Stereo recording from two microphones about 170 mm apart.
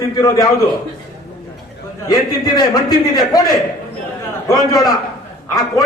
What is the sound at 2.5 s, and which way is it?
A man's voice, 25° left (ahead or behind).